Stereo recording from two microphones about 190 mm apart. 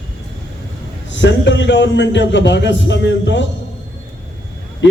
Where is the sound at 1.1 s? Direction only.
70° left (ahead or behind).